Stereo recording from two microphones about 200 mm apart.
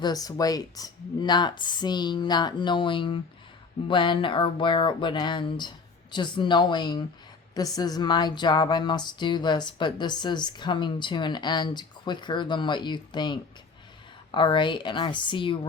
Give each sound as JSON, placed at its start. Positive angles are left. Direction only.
{"t": 0.0, "sound": "speech", "side_deg": 20}